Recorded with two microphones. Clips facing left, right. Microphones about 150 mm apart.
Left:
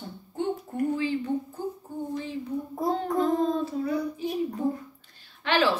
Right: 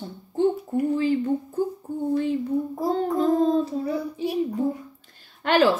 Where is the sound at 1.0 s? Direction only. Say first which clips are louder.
Right 5 dB; 45° right (ahead or behind).